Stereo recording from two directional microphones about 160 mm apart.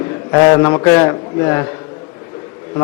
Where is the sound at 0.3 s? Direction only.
20° left (ahead or behind).